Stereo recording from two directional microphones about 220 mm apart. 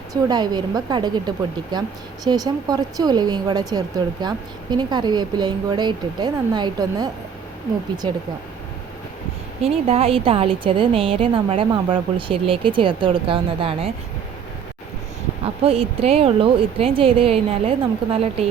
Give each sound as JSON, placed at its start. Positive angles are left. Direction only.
{"t": 0.1, "sound": "speech", "side_deg": -20}
{"t": 9.6, "sound": "speech", "side_deg": -25}
{"t": 15.6, "sound": "speech", "side_deg": -25}